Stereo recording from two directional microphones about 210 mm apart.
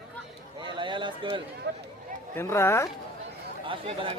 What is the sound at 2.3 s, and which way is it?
Speech, 10° left (ahead or behind).